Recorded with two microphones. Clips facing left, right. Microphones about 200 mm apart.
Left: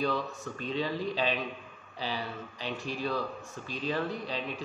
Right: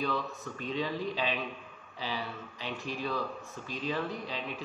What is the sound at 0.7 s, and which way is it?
A man's voice, 35° left (ahead or behind).